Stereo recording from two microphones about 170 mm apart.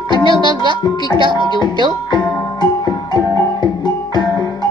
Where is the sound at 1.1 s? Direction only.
30° right (ahead or behind).